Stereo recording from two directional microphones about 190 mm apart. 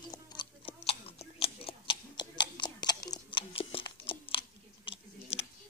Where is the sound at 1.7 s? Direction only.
25° left (ahead or behind).